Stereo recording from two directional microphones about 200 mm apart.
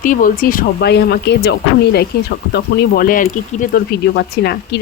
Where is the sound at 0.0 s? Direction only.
40° left (ahead or behind).